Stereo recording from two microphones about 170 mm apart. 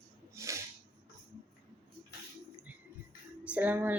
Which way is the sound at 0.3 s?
15° right (ahead or behind).